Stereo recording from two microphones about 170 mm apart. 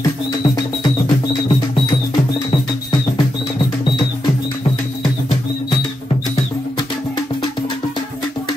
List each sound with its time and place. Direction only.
0.4 s music: 30° left (ahead or behind)